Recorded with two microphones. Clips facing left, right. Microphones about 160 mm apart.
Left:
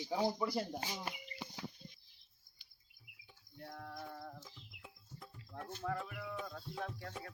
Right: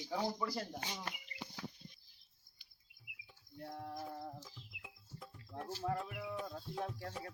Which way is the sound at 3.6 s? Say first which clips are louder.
Right 3 dB; 25° right (ahead or behind).